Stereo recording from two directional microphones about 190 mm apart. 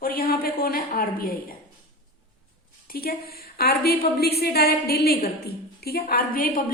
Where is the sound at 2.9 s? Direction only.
50° left (ahead or behind).